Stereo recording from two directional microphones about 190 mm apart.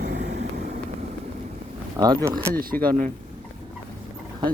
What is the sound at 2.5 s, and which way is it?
Speech, 50° right (ahead or behind).